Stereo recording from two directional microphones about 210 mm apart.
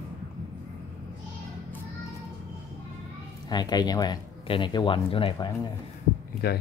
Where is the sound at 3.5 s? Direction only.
20° left (ahead or behind).